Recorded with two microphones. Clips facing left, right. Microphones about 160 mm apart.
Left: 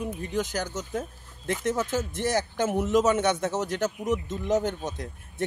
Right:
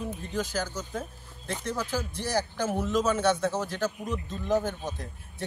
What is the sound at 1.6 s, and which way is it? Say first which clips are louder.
Speech: left 4 dB; 20° left (ahead or behind).